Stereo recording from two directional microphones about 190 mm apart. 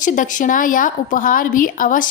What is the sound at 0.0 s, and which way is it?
A woman's voice, 40° left (ahead or behind).